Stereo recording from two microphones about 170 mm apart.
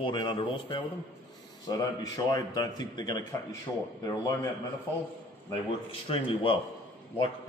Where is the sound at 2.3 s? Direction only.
25° left (ahead or behind).